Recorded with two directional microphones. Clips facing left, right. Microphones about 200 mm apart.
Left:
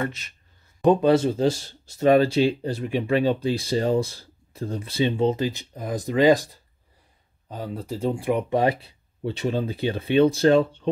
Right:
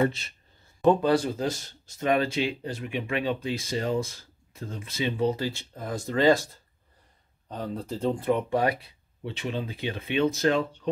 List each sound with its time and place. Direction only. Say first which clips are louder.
0.8 s speech: left 4 dB; 20° left (ahead or behind)
9.2 s speech: left 7 dB; 40° left (ahead or behind)